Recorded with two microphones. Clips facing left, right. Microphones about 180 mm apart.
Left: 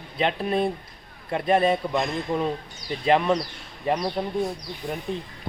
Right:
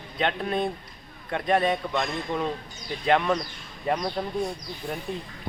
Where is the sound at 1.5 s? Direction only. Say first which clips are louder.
Left 3 dB; 30° left (ahead or behind).